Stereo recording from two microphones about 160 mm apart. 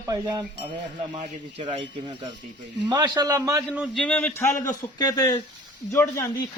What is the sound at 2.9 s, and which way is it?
Speech, 25° right (ahead or behind).